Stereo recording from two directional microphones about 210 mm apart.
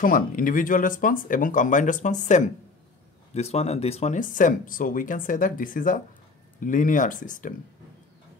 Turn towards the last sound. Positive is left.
turn(degrees=40)  # may be behind; listen again after turning